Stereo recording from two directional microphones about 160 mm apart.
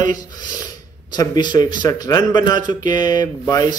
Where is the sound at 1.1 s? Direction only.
25° left (ahead or behind).